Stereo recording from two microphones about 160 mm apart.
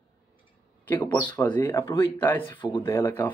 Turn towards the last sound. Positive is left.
turn(degrees=10)  # may be behind; listen again after turning